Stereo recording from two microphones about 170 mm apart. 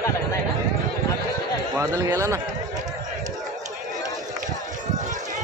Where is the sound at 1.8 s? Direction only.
15° right (ahead or behind).